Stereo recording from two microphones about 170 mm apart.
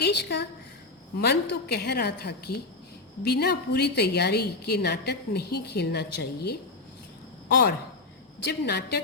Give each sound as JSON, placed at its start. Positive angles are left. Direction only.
{"t": 0.0, "sound": "a woman's voice", "side_deg": 85}
{"t": 1.2, "sound": "a woman's voice", "side_deg": 70}